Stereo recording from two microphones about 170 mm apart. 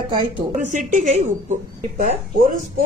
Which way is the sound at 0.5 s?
45° right (ahead or behind).